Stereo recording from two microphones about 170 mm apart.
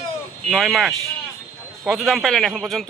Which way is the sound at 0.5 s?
Centre (ahead or behind).